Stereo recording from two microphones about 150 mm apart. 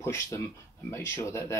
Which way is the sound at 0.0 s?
20° left (ahead or behind).